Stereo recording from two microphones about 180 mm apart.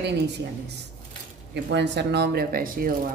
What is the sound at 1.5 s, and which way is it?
Speech, 75° right (ahead or behind).